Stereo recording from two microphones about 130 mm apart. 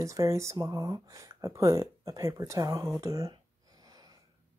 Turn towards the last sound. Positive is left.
turn(degrees=-25)  # may be behind; listen again after turning